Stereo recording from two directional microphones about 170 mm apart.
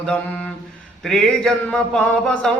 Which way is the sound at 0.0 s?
5° left (ahead or behind).